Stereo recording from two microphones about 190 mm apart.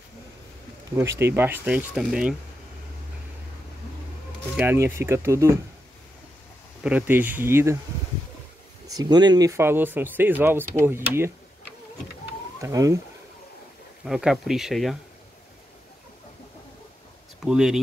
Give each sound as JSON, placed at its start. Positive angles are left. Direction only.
{"t": 0.9, "sound": "speech", "side_deg": -15}
{"t": 4.6, "sound": "speech", "side_deg": -10}
{"t": 6.8, "sound": "speech", "side_deg": -5}
{"t": 8.8, "sound": "speech", "side_deg": -20}
{"t": 12.6, "sound": "speech", "side_deg": -15}
{"t": 14.0, "sound": "speech", "side_deg": -5}
{"t": 17.5, "sound": "speech", "side_deg": -5}